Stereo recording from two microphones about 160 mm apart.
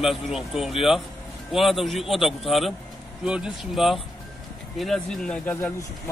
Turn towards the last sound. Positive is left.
turn(degrees=10)  # may be behind; listen again after turning